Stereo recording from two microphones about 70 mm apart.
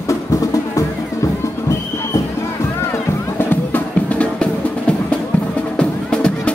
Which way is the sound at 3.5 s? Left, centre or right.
Left.